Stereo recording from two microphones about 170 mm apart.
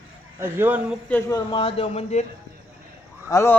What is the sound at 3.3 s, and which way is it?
Speech, 15° left (ahead or behind).